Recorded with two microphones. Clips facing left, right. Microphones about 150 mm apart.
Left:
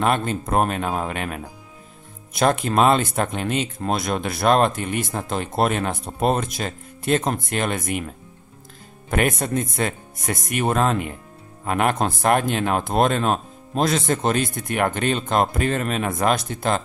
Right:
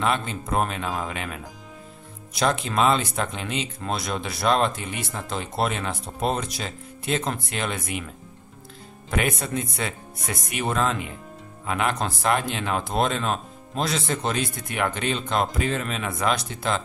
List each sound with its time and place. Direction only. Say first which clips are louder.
0.0 s speech: left 4 dB; 50° left (ahead or behind)
9.1 s speech: left 4 dB; 50° left (ahead or behind)